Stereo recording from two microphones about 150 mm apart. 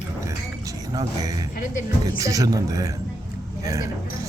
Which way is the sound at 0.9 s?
25° right (ahead or behind).